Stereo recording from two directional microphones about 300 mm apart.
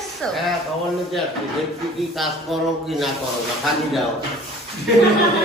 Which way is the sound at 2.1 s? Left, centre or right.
Centre.